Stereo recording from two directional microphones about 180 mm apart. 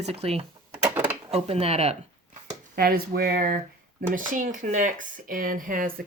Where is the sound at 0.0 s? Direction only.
35° right (ahead or behind).